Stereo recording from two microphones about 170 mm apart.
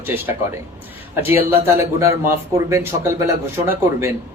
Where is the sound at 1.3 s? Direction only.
15° right (ahead or behind).